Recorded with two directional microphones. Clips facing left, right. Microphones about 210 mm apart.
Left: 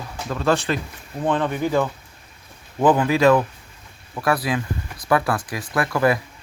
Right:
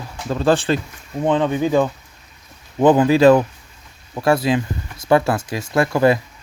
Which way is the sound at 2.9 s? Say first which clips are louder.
Right 4 dB; 30° right (ahead or behind).